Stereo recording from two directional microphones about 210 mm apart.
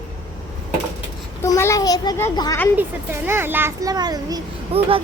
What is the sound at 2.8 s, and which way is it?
A child's voice, 10° right (ahead or behind).